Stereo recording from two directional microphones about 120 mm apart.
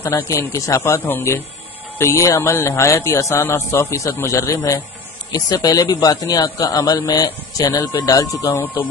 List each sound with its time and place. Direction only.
0.0 s a man's voice: 20° left (ahead or behind)
5.3 s speech: 35° left (ahead or behind)
6.2 s speech: 30° left (ahead or behind)